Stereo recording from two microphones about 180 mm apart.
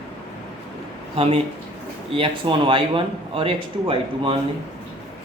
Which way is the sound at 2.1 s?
30° right (ahead or behind).